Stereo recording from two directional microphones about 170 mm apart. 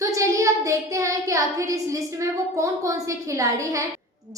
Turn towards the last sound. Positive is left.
turn(degrees=-20)  # may be behind; listen again after turning